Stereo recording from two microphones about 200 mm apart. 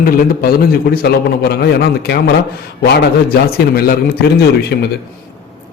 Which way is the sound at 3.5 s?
50° left (ahead or behind).